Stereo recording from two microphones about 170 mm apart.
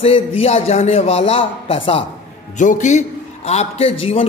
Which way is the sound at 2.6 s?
45° left (ahead or behind).